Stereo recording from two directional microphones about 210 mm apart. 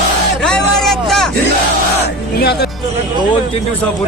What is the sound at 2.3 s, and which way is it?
Speech, 50° left (ahead or behind).